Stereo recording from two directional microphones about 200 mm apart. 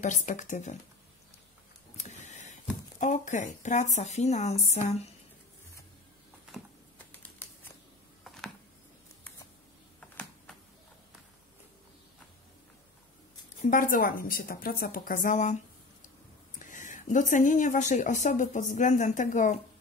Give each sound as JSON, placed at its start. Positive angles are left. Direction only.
{"t": 0.0, "sound": "speech", "side_deg": 35}
{"t": 2.0, "sound": "speech", "side_deg": 35}
{"t": 6.5, "sound": "a sound", "side_deg": 10}
{"t": 9.9, "sound": "a sound", "side_deg": 5}
{"t": 13.6, "sound": "a woman's voice", "side_deg": 40}
{"t": 16.5, "sound": "speech", "side_deg": 40}